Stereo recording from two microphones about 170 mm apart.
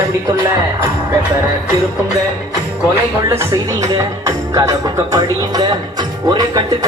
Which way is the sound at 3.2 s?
20° right (ahead or behind).